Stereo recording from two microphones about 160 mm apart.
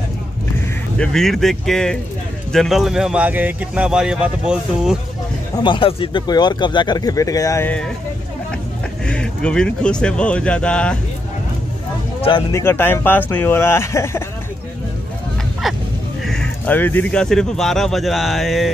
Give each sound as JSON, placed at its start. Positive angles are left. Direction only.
{"t": 0.9, "sound": "speech", "side_deg": 5}
{"t": 5.6, "sound": "speech", "side_deg": 30}
{"t": 9.0, "sound": "speech", "side_deg": 5}
{"t": 12.2, "sound": "speech", "side_deg": 30}
{"t": 12.5, "sound": "speech", "side_deg": 15}
{"t": 15.6, "sound": "vehicle", "side_deg": 0}
{"t": 16.3, "sound": "speech", "side_deg": 5}